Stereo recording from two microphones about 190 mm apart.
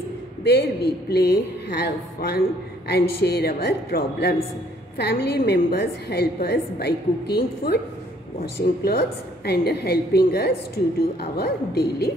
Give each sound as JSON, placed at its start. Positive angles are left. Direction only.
{"t": 0.4, "sound": "a woman's voice", "side_deg": 60}